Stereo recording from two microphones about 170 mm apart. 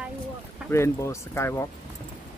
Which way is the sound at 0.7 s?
15° left (ahead or behind).